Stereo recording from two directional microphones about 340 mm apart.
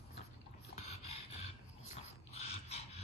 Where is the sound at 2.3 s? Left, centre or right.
Centre.